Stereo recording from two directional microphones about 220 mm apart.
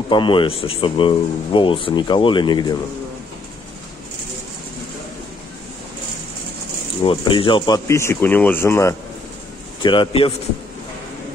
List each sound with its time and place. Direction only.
0.1 s speech: 20° left (ahead or behind)
7.0 s speech: 25° left (ahead or behind)
9.8 s speech: 20° left (ahead or behind)